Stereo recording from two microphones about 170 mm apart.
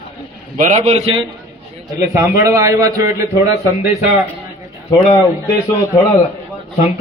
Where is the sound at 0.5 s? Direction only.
45° right (ahead or behind).